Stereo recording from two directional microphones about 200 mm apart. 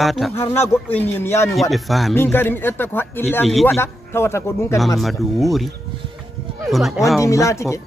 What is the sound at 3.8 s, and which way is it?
Speech, 10° left (ahead or behind).